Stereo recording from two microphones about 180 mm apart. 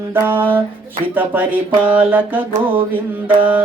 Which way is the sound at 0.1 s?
10° right (ahead or behind).